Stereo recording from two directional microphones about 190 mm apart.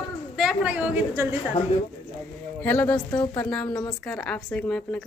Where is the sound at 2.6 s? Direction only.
10° left (ahead or behind).